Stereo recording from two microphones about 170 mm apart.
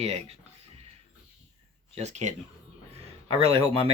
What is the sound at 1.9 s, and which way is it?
Speech, 40° right (ahead or behind).